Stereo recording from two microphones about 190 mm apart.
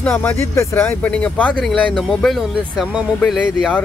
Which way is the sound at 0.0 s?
10° left (ahead or behind).